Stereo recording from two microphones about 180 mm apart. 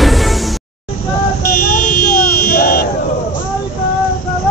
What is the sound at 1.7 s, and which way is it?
Buzzer, 50° left (ahead or behind).